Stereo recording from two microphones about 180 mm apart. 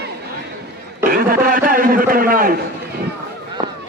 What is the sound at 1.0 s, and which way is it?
A man's voice, 50° right (ahead or behind).